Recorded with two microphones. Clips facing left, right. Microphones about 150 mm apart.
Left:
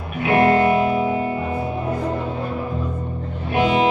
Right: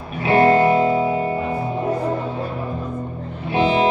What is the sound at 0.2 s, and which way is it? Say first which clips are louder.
Music: right 1 dB; 30° right (ahead or behind).